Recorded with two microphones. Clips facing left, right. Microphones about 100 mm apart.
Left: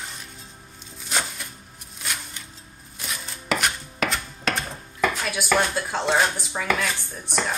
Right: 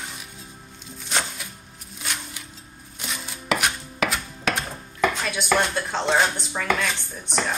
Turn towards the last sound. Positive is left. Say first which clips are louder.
# even
turn(degrees=5)  # may be behind; listen again after turning